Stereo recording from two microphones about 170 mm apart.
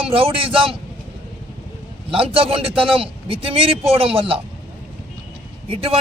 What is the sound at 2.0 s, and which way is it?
A man's voice, 30° right (ahead or behind).